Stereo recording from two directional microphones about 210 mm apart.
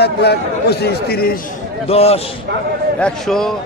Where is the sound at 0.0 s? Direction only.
50° left (ahead or behind).